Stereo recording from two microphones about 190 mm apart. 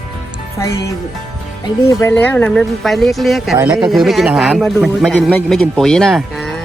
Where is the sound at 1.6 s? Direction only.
15° left (ahead or behind); by 3.5 s centre (ahead or behind).